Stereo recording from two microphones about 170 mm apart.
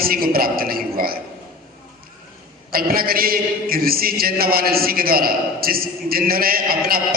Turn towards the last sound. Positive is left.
turn(degrees=-60)  # may be behind; listen again after turning